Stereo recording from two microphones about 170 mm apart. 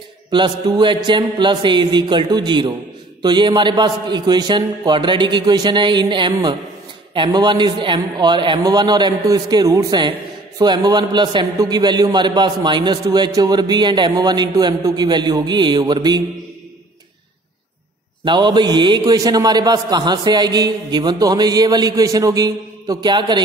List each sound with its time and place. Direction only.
0.3 s a man's voice: 25° right (ahead or behind)
18.2 s a man's voice: 25° right (ahead or behind)